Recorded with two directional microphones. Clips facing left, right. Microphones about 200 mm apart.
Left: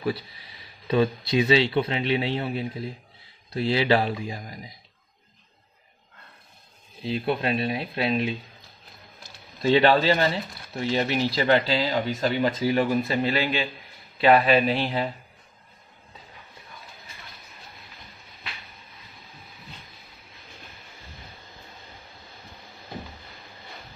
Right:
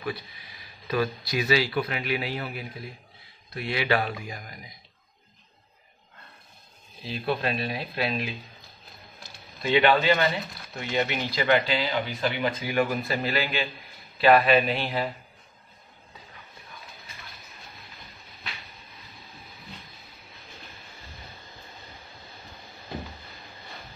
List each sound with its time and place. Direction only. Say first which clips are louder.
0.0 s speech: left 5 dB; 30° left (ahead or behind)
7.0 s speech: left 3 dB; 25° left (ahead or behind)
9.6 s speech: left 3 dB; 35° left (ahead or behind)